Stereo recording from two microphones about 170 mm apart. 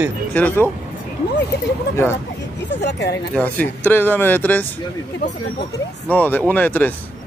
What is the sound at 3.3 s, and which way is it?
Speech, 10° left (ahead or behind).